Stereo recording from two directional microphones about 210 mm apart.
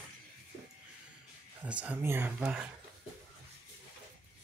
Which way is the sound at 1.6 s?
5° right (ahead or behind).